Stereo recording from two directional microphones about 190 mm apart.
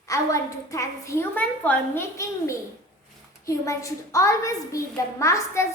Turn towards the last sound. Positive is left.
turn(degrees=15)  # may be behind; listen again after turning